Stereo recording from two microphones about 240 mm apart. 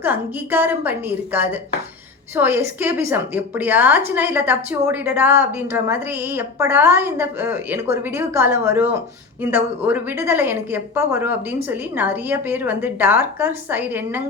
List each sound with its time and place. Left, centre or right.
0.0 s a woman's voice: centre